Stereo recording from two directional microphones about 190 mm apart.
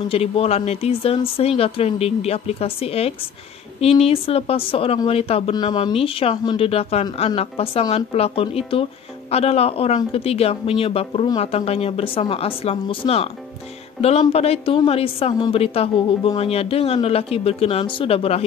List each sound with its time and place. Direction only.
0.1 s a woman's voice: 30° left (ahead or behind)
14.3 s a woman's voice: 30° left (ahead or behind)